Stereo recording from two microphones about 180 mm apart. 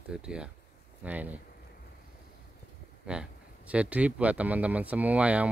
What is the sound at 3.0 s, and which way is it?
Speech, 5° right (ahead or behind).